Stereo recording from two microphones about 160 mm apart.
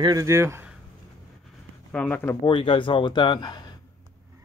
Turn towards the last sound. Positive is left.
turn(degrees=30)  # may be behind; listen again after turning